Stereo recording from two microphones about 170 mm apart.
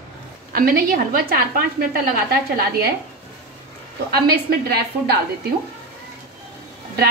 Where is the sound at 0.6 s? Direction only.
60° right (ahead or behind).